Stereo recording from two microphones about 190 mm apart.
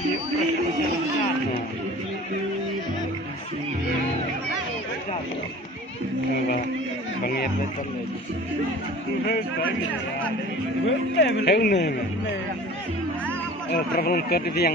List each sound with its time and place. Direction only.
10.9 s speech: 65° left (ahead or behind)
13.7 s speech: 55° left (ahead or behind)